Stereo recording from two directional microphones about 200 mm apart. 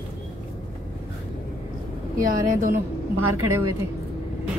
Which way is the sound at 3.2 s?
90° right.